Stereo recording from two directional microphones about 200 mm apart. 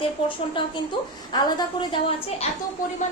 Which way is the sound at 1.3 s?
20° left (ahead or behind).